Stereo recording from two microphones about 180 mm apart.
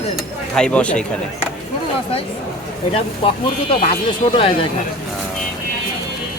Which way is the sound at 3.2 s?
30° left (ahead or behind).